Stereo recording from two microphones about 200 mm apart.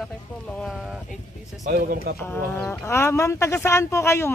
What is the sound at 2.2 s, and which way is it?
Speech, 10° left (ahead or behind).